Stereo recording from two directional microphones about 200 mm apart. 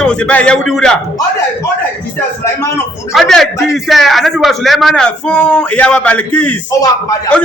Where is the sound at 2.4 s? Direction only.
15° left (ahead or behind).